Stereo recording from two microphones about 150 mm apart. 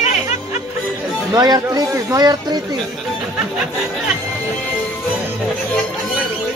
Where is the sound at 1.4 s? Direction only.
25° right (ahead or behind).